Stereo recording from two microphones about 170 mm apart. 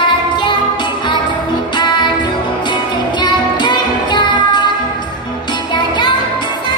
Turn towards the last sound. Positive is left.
turn(degrees=30)  # may be behind; listen again after turning